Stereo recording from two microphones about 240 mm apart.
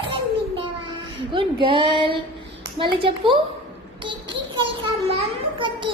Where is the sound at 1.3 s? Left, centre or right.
Right.